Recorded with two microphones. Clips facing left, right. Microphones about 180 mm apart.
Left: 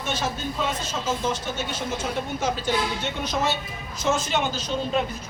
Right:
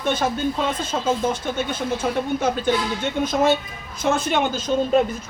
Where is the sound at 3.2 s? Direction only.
50° right (ahead or behind).